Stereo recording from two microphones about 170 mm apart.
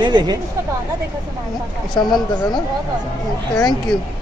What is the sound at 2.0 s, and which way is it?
Speech, 25° left (ahead or behind).